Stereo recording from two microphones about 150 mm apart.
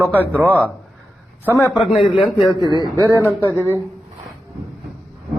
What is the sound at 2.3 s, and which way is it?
Speech, centre (ahead or behind).